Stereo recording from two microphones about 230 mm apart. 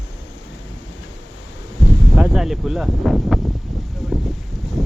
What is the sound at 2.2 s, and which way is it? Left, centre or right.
Speech, centre.